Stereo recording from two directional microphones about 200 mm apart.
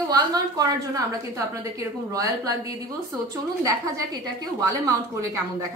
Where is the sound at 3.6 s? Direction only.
15° right (ahead or behind).